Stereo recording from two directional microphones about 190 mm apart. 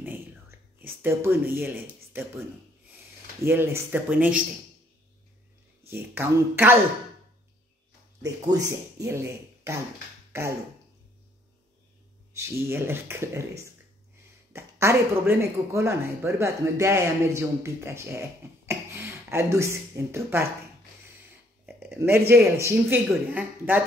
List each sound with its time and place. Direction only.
0.0 s a sound: 10° right (ahead or behind)
3.4 s speech: 15° right (ahead or behind)
5.9 s speech: 10° right (ahead or behind)
8.2 s speech: 20° right (ahead or behind)
12.4 s speech: 10° right (ahead or behind)
18.7 s a sound: 15° right (ahead or behind)
19.2 s speech: 15° right (ahead or behind)
21.6 s a sound: 10° right (ahead or behind)
22.7 s speech: 10° right (ahead or behind)